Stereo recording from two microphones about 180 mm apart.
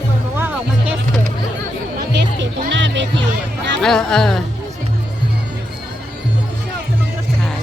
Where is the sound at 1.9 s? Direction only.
75° right (ahead or behind).